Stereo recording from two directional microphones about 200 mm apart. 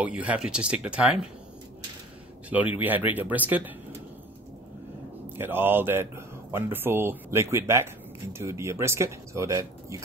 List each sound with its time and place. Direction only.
0.0 s speech: 5° right (ahead or behind)
2.8 s speech: 10° right (ahead or behind)
5.4 s speech: 10° right (ahead or behind)